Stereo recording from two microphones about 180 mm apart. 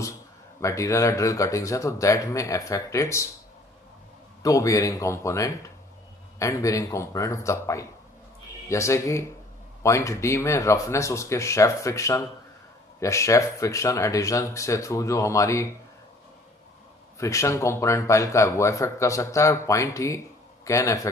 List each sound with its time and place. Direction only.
0.6 s speech: 15° left (ahead or behind)
4.4 s speech: 20° left (ahead or behind)
17.2 s speech: 15° left (ahead or behind)